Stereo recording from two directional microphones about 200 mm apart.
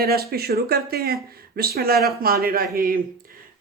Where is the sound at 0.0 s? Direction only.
50° right (ahead or behind).